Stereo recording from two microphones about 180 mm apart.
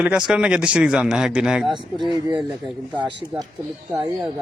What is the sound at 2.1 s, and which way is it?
Speech, 20° right (ahead or behind).